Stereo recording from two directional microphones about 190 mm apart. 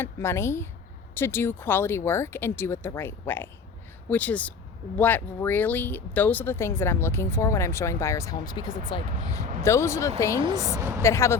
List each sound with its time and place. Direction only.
0.0 s speech: 15° left (ahead or behind)
10.4 s speech: 20° right (ahead or behind)
11.0 s speech: 15° left (ahead or behind)